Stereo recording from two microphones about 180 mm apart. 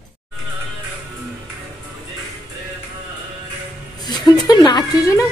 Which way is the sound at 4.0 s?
25° left (ahead or behind).